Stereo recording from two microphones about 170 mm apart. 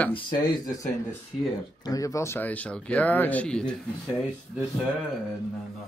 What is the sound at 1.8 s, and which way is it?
Speech, 20° left (ahead or behind).